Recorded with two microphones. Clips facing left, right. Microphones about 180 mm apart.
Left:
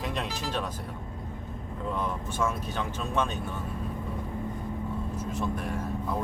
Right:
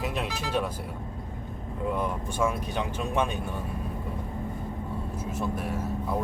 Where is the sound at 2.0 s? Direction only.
10° right (ahead or behind).